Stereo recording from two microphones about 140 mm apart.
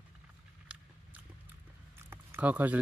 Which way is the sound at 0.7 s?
10° right (ahead or behind).